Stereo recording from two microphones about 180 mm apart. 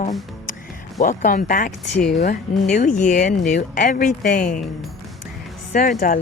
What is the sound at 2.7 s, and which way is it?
Speech, 45° left (ahead or behind).